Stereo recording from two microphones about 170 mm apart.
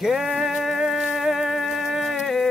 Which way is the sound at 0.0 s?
Centre (ahead or behind).